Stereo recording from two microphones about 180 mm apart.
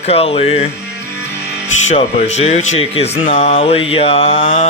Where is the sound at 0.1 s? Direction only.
35° left (ahead or behind).